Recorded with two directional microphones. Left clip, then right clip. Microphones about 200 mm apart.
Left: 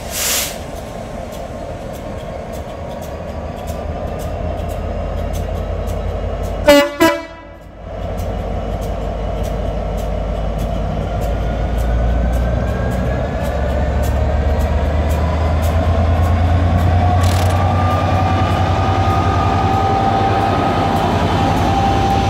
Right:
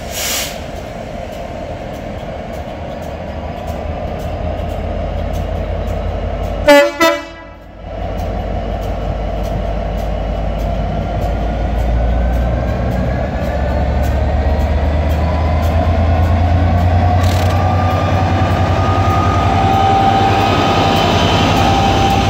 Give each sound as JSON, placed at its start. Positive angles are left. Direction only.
{"t": 6.6, "sound": "train", "side_deg": 5}
{"t": 17.2, "sound": "train", "side_deg": -10}